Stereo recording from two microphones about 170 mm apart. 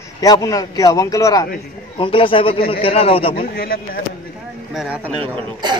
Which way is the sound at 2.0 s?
30° left (ahead or behind).